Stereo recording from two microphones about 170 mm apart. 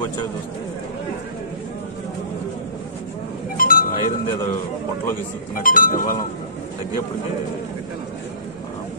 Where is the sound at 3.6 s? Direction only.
55° left (ahead or behind).